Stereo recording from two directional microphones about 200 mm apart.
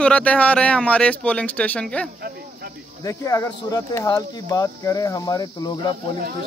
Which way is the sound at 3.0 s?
15° left (ahead or behind).